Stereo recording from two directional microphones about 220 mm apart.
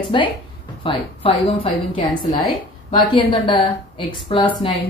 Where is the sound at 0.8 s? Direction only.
25° left (ahead or behind).